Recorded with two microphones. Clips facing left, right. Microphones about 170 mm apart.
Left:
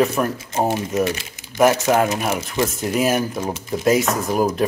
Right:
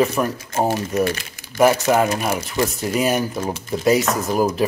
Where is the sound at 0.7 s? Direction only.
20° left (ahead or behind).